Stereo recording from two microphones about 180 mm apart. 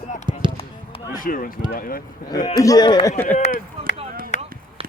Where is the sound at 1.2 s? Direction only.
50° left (ahead or behind).